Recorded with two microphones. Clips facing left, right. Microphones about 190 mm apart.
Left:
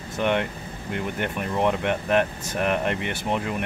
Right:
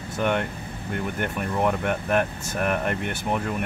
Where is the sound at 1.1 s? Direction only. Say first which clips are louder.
Left 1 dB; centre (ahead or behind).